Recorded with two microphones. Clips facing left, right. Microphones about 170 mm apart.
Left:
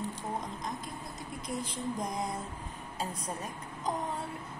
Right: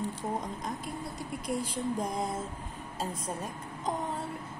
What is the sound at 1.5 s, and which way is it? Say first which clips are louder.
Speech: right 4 dB; 10° right (ahead or behind).